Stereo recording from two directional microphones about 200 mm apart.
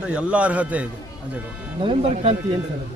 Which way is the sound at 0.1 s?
5° right (ahead or behind).